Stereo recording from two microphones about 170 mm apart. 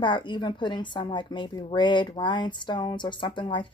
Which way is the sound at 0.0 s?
25° left (ahead or behind).